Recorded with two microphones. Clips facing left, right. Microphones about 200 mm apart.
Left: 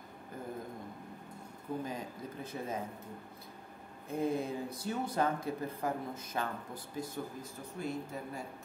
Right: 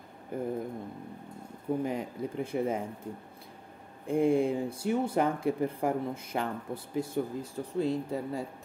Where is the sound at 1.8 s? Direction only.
70° right (ahead or behind).